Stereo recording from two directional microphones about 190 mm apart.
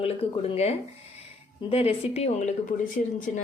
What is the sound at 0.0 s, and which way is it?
A woman's voice, 30° left (ahead or behind).